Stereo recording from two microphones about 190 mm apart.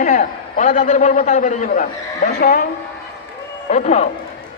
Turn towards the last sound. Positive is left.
turn(degrees=40)  # may be behind; listen again after turning